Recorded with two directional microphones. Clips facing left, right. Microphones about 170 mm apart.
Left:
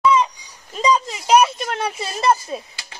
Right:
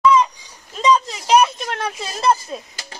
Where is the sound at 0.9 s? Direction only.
5° left (ahead or behind).